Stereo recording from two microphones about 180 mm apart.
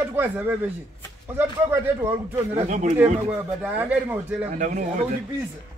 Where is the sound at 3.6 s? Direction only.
10° right (ahead or behind).